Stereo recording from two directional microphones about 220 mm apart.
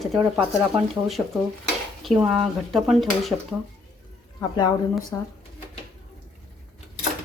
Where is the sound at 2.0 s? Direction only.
Centre (ahead or behind).